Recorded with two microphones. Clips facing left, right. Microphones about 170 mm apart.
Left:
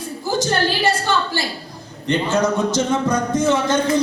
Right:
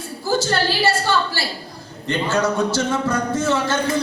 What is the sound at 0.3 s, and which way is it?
A man's voice, 20° left (ahead or behind).